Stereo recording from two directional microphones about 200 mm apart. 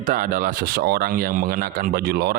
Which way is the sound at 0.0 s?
45° right (ahead or behind).